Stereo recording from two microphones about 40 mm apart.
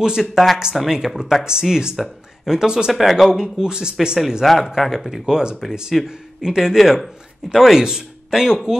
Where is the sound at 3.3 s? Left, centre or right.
Centre.